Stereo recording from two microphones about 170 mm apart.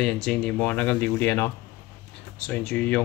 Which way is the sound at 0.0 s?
5° left (ahead or behind).